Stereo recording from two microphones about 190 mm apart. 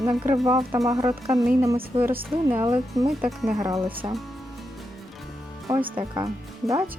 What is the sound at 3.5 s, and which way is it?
Speech, 15° right (ahead or behind).